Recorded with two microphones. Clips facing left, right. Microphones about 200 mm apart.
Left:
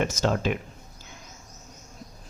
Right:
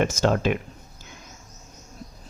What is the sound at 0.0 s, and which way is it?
Speech, 55° right (ahead or behind).